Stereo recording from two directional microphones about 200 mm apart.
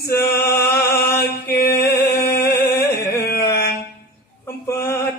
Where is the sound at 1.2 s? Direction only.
50° left (ahead or behind).